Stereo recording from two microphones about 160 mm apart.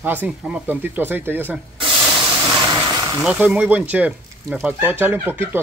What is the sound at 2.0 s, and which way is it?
Spray, 10° right (ahead or behind).